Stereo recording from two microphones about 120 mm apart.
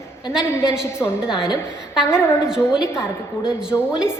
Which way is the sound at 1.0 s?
30° left (ahead or behind).